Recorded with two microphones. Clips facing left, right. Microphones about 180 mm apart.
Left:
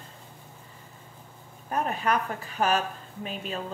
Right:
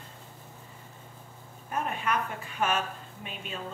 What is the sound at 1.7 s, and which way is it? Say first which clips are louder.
A woman's voice: left 4 dB; 35° left (ahead or behind).